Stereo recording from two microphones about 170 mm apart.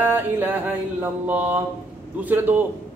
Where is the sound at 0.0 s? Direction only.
10° right (ahead or behind).